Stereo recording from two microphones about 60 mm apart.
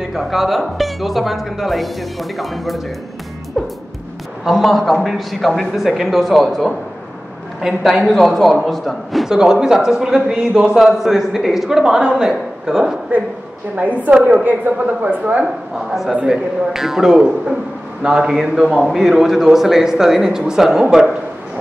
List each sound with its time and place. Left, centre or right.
0.1 s a woman's voice: centre
3.6 s music: centre
4.5 s a woman's voice: centre
8.1 s a woman's voice: centre
9.3 s a man's voice: centre
10.8 s a man's voice: centre
13.7 s speech: right
14.4 s speech: right
15.4 s a woman's voice: centre